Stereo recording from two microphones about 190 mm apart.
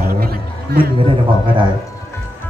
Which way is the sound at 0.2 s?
50° right (ahead or behind).